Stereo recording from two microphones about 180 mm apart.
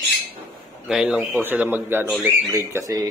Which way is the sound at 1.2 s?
15° right (ahead or behind).